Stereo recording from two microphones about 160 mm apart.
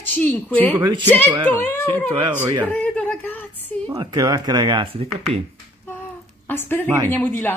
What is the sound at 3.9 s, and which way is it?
Speech, 25° right (ahead or behind).